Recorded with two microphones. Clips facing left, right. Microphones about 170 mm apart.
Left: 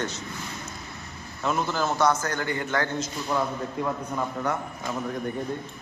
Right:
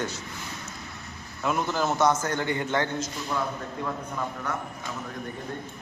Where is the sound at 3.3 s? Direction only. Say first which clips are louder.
Left 3 dB; 15° left (ahead or behind).